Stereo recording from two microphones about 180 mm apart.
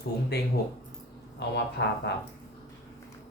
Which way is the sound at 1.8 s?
75° left (ahead or behind).